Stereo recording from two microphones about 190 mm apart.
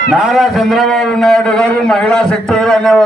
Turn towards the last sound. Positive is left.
turn(degrees=5)  # may be behind; listen again after turning